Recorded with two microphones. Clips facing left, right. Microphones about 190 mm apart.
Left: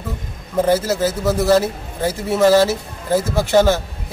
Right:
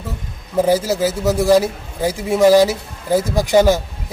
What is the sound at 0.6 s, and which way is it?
A man's voice, 10° right (ahead or behind).